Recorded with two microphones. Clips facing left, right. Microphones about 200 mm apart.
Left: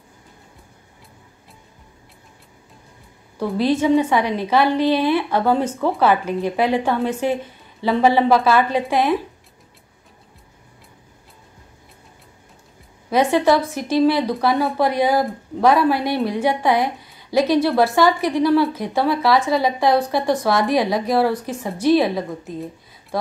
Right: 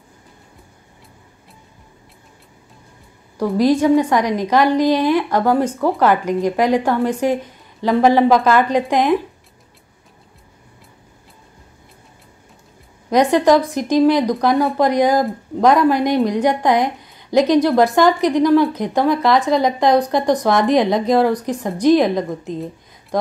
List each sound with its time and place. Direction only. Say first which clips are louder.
3.3 s a woman's voice: right 4 dB; 15° right (ahead or behind)
13.1 s a woman's voice: right 3 dB; 15° right (ahead or behind)